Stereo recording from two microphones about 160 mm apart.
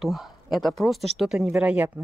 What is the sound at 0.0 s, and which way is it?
Speech, centre (ahead or behind).